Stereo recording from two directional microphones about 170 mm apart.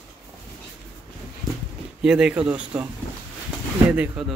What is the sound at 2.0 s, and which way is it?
Speech, 5° right (ahead or behind).